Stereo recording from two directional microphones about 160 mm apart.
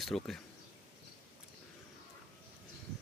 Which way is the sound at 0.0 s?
Centre (ahead or behind).